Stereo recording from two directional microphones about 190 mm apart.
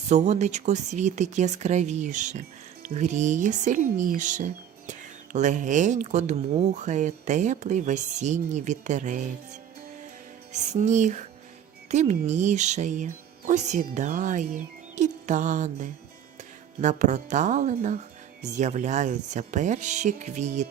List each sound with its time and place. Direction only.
0.1 s speech: 35° right (ahead or behind)